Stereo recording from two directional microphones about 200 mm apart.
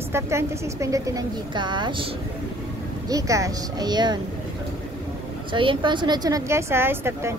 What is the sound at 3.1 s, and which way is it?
A woman's voice, 15° right (ahead or behind).